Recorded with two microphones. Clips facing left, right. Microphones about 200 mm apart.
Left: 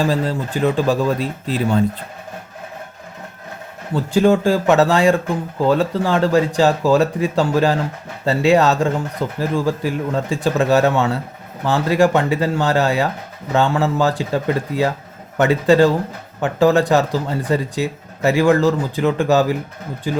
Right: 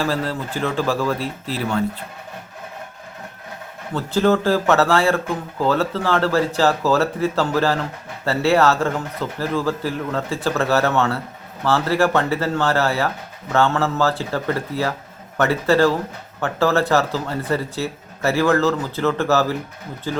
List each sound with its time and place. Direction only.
0.0 s speech: 15° left (ahead or behind)
3.9 s speech: 15° left (ahead or behind)